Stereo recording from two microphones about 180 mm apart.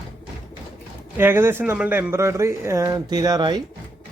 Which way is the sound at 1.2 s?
10° right (ahead or behind).